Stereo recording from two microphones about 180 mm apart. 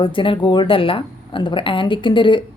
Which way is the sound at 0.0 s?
30° left (ahead or behind).